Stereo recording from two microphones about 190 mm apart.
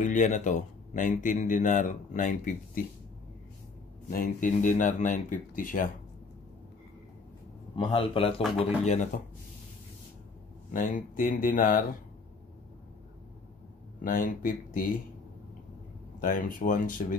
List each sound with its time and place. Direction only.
0.0 s speech: 40° left (ahead or behind)
4.1 s speech: 45° left (ahead or behind)
7.7 s speech: 25° left (ahead or behind)
10.7 s speech: 45° left (ahead or behind)
14.0 s speech: 45° left (ahead or behind)
16.2 s speech: 45° left (ahead or behind)